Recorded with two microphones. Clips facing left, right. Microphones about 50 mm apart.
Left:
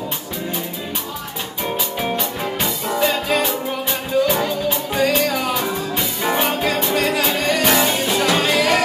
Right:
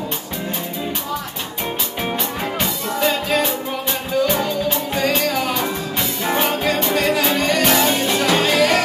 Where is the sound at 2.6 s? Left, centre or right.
Centre.